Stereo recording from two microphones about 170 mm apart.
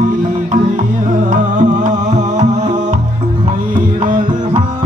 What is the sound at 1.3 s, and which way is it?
Music, 50° right (ahead or behind).